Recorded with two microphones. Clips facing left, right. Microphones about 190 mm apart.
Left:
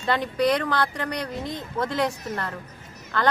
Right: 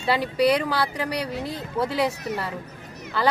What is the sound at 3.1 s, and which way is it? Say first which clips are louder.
Speech: right 1 dB; 5° right (ahead or behind).